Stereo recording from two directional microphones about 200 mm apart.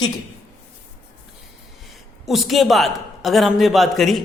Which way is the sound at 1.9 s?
Centre (ahead or behind).